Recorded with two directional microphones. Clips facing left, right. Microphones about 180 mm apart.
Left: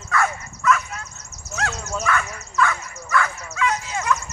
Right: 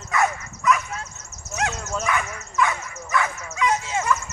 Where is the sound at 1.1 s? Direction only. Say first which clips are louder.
Even; 35° left (ahead or behind).